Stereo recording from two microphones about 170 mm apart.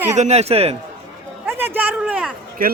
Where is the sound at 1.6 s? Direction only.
10° right (ahead or behind).